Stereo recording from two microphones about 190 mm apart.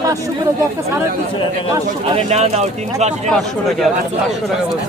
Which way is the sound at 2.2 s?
35° right (ahead or behind).